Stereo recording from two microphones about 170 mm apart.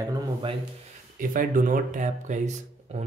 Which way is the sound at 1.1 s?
50° right (ahead or behind).